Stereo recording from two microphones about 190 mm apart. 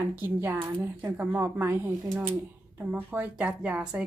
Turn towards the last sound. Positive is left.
turn(degrees=-5)  # may be behind; listen again after turning